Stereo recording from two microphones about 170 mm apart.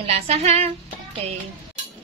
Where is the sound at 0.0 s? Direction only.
40° right (ahead or behind).